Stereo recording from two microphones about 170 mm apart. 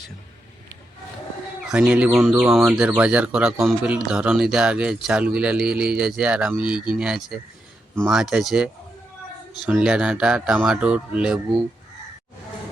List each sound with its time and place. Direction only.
1.6 s speech: 5° right (ahead or behind)